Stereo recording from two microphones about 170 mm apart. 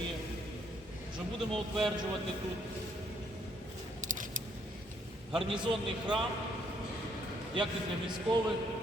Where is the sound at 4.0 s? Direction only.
50° right (ahead or behind).